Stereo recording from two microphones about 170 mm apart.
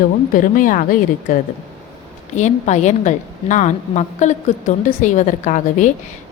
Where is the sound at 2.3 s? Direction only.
45° left (ahead or behind).